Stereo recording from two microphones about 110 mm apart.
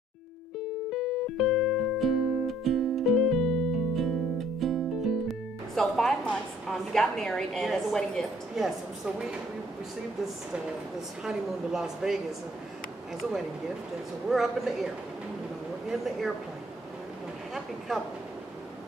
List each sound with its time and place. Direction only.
0.8 s music: centre (ahead or behind)
11.2 s speech: 5° right (ahead or behind)
14.3 s speech: centre (ahead or behind)
15.9 s speech: centre (ahead or behind)